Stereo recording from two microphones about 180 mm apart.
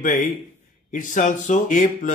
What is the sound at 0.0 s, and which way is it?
Speech, 45° left (ahead or behind).